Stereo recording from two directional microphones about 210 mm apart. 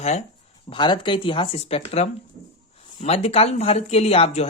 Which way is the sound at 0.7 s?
20° left (ahead or behind).